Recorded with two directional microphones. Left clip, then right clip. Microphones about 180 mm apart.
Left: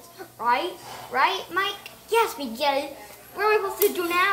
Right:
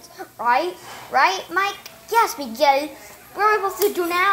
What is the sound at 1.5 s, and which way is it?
Speech, 25° right (ahead or behind).